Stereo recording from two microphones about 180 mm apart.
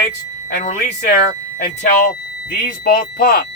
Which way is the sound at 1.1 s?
70° left (ahead or behind).